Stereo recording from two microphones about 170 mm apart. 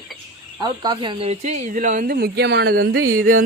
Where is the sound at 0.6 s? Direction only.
25° right (ahead or behind).